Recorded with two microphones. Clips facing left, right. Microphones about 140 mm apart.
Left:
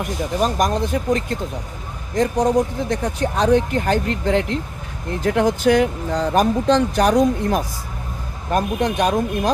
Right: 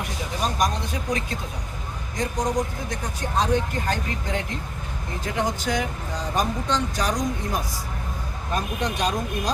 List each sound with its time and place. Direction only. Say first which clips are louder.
0.0 s speech: left 7 dB; 50° left (ahead or behind)